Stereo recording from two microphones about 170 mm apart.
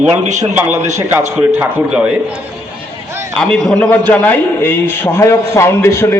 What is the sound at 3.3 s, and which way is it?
A man's voice, 5° left (ahead or behind).